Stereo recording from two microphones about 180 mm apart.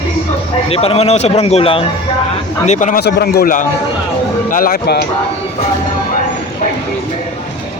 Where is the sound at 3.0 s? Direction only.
60° left (ahead or behind).